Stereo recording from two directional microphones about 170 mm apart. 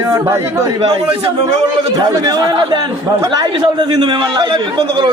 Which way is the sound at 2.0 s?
20° right (ahead or behind).